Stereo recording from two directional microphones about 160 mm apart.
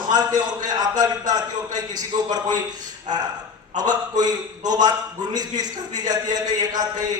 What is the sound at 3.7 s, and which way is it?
A man's voice, 25° right (ahead or behind).